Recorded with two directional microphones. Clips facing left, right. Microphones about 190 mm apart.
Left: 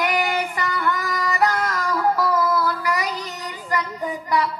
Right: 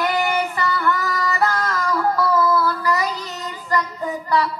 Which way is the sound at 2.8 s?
15° left (ahead or behind).